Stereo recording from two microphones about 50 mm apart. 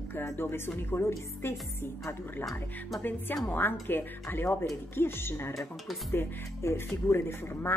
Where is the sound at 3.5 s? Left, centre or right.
Left.